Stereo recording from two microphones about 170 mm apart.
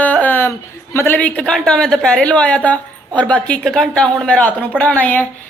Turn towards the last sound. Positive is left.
turn(degrees=10)  # may be behind; listen again after turning